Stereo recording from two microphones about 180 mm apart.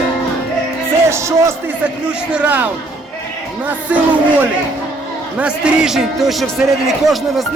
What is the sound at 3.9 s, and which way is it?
Speech, 10° right (ahead or behind).